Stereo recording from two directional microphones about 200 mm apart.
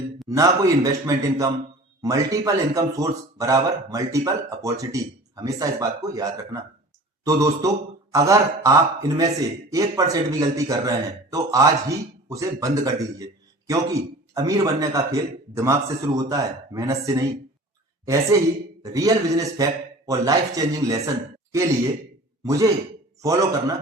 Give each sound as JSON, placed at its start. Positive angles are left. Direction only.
{"t": 0.3, "sound": "a woman's voice", "side_deg": -15}
{"t": 22.4, "sound": "speech", "side_deg": -15}